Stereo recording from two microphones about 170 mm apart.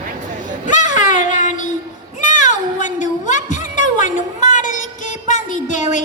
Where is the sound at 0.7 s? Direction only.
45° left (ahead or behind).